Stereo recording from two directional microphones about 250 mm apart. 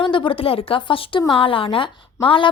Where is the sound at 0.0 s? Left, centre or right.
Centre.